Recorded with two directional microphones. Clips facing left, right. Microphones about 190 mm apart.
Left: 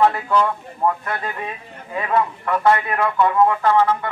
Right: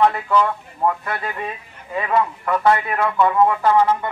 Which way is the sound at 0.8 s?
5° right (ahead or behind).